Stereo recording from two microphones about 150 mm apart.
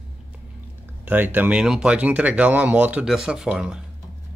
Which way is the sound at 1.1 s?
10° right (ahead or behind).